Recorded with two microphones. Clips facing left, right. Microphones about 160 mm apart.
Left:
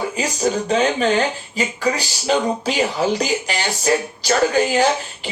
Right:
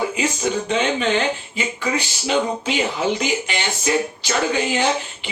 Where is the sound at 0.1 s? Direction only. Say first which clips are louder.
Left 1 dB; 40° left (ahead or behind).